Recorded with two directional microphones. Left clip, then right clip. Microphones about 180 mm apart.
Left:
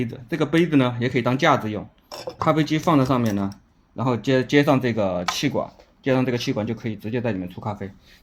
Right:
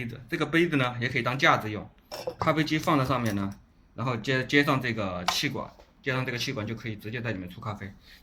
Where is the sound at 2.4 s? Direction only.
35° left (ahead or behind).